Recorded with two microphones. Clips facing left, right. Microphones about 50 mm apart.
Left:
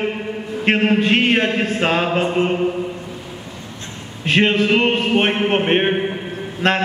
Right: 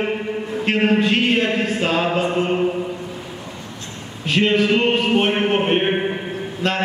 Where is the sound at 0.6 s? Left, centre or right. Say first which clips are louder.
Left 1 dB; left.